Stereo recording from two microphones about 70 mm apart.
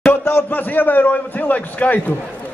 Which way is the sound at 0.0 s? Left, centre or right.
Left.